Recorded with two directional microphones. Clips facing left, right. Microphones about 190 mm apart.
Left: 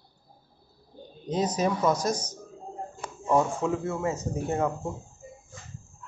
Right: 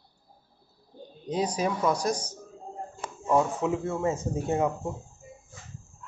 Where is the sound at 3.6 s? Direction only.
20° right (ahead or behind).